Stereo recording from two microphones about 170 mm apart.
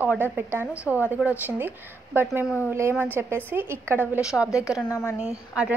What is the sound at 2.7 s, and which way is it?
A woman's voice, 15° right (ahead or behind).